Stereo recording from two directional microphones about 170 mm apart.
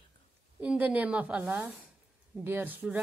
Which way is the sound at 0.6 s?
10° right (ahead or behind).